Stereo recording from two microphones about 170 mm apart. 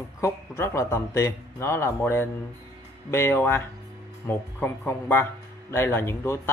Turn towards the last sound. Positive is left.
turn(degrees=15)  # may be behind; listen again after turning